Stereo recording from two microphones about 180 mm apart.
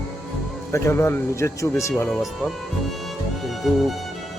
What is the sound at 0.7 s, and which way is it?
Speech, 15° left (ahead or behind).